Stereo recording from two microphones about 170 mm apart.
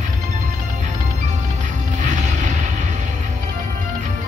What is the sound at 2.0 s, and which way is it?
Music, 45° right (ahead or behind).